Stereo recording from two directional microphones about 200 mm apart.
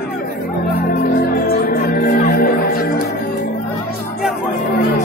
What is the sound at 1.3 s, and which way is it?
Music, 50° left (ahead or behind).